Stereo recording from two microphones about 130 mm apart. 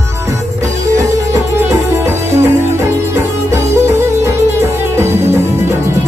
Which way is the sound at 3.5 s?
20° right (ahead or behind).